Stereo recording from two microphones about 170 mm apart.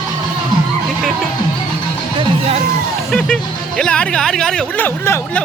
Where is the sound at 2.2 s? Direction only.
35° right (ahead or behind).